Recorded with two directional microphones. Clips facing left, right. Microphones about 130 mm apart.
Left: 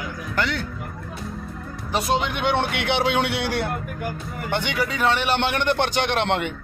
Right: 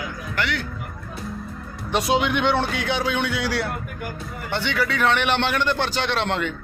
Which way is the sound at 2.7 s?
70° left (ahead or behind).